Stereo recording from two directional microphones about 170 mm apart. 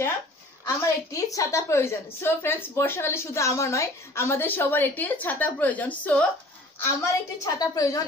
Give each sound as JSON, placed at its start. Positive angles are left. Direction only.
{"t": 0.7, "sound": "a woman's voice", "side_deg": 15}